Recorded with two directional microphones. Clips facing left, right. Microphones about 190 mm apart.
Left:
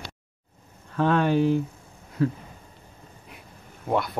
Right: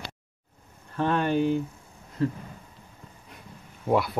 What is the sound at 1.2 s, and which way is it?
Speech, 5° left (ahead or behind).